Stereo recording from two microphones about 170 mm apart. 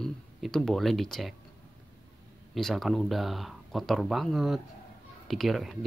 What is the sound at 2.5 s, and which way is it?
Speech, centre (ahead or behind).